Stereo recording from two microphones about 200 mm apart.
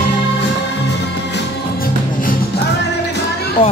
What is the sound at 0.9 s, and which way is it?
Music, 60° left (ahead or behind).